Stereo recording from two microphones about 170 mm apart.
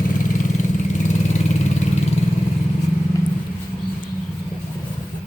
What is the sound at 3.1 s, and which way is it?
Vehicle, 20° left (ahead or behind).